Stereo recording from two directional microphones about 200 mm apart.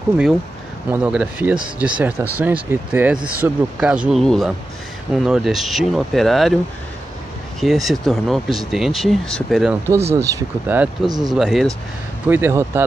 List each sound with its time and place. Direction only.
0.8 s speech: 10° right (ahead or behind)
7.6 s speech: centre (ahead or behind)
10.1 s speech: 15° right (ahead or behind)
11.1 s speech: 20° right (ahead or behind)
11.3 s speech: centre (ahead or behind)
12.3 s speech: 10° right (ahead or behind)